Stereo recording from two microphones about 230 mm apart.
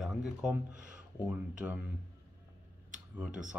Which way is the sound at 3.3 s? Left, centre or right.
Right.